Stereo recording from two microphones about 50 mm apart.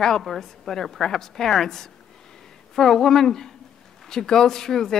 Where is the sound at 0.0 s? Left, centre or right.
Centre.